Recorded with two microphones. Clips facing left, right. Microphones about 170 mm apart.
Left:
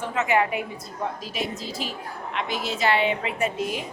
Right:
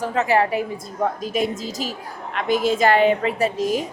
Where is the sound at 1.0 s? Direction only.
50° right (ahead or behind).